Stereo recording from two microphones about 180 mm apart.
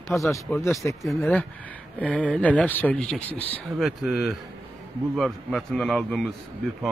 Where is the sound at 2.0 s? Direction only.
10° left (ahead or behind).